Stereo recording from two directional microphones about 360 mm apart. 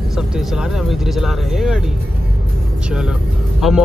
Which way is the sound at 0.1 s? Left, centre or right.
Centre.